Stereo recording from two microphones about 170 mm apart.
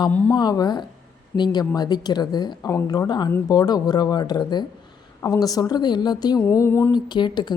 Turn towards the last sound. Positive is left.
turn(degrees=25)  # may be behind; listen again after turning